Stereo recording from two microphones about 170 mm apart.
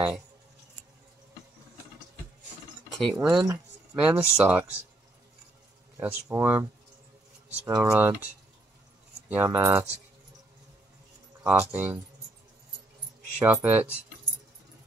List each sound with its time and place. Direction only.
3.0 s speech: centre (ahead or behind)
4.0 s speech: 15° right (ahead or behind)
5.9 s speech: 10° right (ahead or behind)
9.3 s speech: 10° right (ahead or behind)
11.4 s speech: 10° right (ahead or behind)
13.4 s speech: 10° right (ahead or behind)